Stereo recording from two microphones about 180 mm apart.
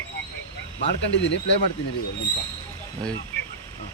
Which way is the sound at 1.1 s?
80° left.